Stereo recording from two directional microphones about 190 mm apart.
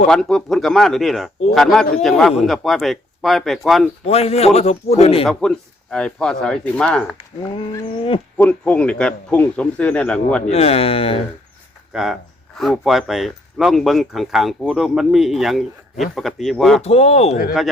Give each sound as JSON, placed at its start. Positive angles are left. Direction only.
{"t": 0.1, "sound": "speech", "side_deg": 5}
{"t": 4.0, "sound": "speech", "side_deg": 35}
{"t": 5.2, "sound": "speech", "side_deg": 5}
{"t": 8.4, "sound": "a man's voice", "side_deg": 5}
{"t": 10.4, "sound": "speech", "side_deg": 35}
{"t": 11.9, "sound": "speech", "side_deg": -5}
{"t": 16.8, "sound": "speech", "side_deg": 35}